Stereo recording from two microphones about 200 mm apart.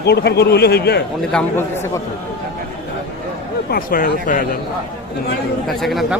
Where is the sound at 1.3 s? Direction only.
10° left (ahead or behind).